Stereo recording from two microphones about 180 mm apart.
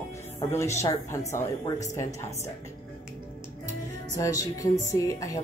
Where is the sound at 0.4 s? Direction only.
15° left (ahead or behind).